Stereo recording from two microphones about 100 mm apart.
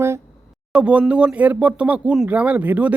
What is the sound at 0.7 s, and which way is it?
Speech, 15° right (ahead or behind).